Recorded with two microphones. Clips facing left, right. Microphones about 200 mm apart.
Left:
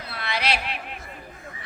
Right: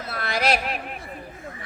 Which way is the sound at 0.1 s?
45° right (ahead or behind).